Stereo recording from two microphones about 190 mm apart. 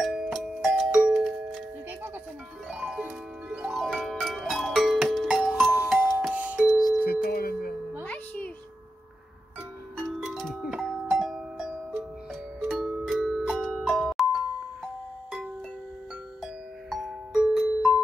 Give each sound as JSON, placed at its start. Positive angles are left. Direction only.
{"t": 0.0, "sound": "music", "side_deg": 0}
{"t": 7.1, "sound": "a sound", "side_deg": 55}
{"t": 8.0, "sound": "music", "side_deg": 10}
{"t": 9.9, "sound": "music", "side_deg": 0}
{"t": 16.9, "sound": "music", "side_deg": 0}